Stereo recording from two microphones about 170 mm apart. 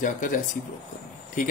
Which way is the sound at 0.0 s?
50° left (ahead or behind).